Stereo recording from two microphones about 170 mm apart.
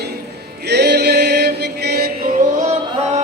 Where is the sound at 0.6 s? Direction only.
80° right.